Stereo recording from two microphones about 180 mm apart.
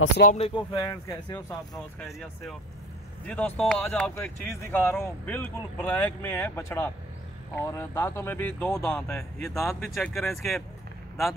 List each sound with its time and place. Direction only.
0.4 s speech: 25° left (ahead or behind)
3.3 s speech: 10° left (ahead or behind)